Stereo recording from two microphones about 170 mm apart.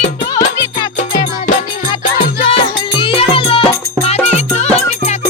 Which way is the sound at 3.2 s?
30° left (ahead or behind).